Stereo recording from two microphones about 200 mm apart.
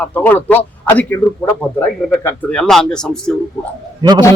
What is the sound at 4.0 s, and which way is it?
Speech, 20° right (ahead or behind).